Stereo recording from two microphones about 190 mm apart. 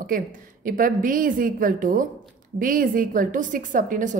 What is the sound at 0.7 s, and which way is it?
A woman's voice, 45° right (ahead or behind).